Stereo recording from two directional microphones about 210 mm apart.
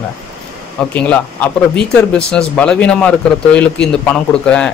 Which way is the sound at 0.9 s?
5° left (ahead or behind).